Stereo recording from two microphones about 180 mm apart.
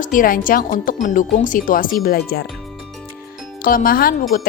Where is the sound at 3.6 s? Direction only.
50° left (ahead or behind).